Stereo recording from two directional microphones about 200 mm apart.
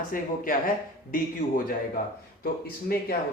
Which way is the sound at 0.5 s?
45° left (ahead or behind).